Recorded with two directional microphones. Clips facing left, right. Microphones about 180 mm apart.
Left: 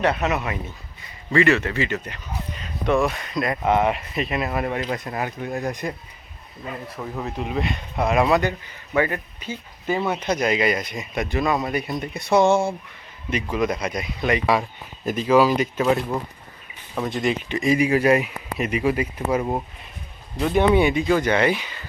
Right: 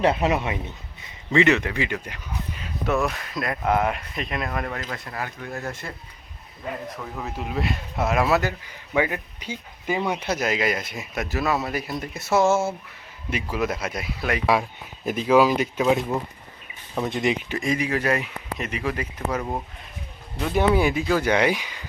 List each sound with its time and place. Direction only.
0.0 s speech: 30° right (ahead or behind); by 4.7 s 5° left (ahead or behind)
4.7 s speech: 20° left (ahead or behind)
7.2 s speech: centre (ahead or behind)
17.1 s speech: 20° right (ahead or behind)
17.5 s speech: centre (ahead or behind)
17.7 s speech: 10° left (ahead or behind)
20.3 s speech: centre (ahead or behind)